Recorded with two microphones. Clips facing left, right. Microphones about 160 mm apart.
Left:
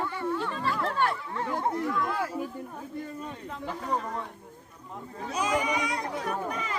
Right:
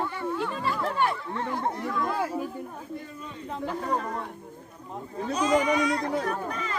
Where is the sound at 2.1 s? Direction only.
25° right (ahead or behind).